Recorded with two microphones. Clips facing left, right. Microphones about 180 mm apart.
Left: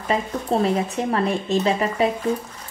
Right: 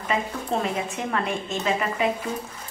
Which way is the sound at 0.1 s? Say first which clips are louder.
Left 4 dB; 35° left (ahead or behind).